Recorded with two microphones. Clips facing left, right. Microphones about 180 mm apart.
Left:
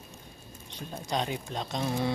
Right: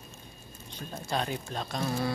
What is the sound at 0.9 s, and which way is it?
Speech, 15° left (ahead or behind).